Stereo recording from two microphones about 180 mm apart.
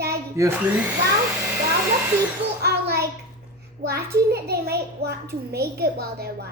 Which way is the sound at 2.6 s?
60° right (ahead or behind).